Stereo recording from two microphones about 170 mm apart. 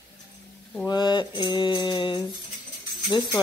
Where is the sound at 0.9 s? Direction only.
25° left (ahead or behind).